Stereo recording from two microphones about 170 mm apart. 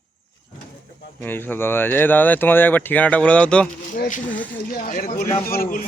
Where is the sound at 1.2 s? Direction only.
10° left (ahead or behind).